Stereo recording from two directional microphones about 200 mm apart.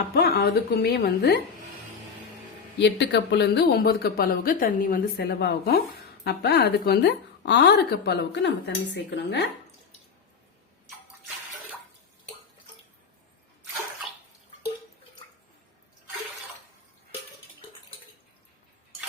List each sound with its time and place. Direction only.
0.2 s speech: 50° left (ahead or behind)
2.7 s a woman's voice: 60° left (ahead or behind)